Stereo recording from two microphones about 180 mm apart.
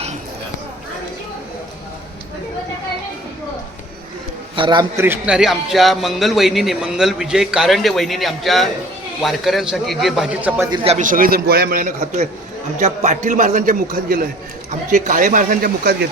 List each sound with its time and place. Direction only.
4.5 s a man's voice: 25° right (ahead or behind)
4.9 s a man's voice: 10° right (ahead or behind)
10.7 s a man's voice: 35° right (ahead or behind); by 16.0 s 55° right (ahead or behind)